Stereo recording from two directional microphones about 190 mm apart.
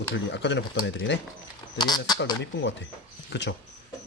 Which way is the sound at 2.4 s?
65° left (ahead or behind).